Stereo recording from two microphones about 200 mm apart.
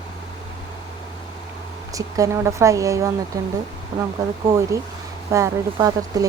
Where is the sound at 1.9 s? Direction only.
15° right (ahead or behind).